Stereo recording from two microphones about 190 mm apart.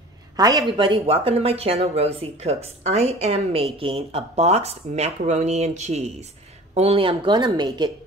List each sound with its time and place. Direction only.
0.4 s speech: 20° right (ahead or behind)